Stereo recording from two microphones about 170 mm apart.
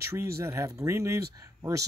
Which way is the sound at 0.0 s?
15° right (ahead or behind).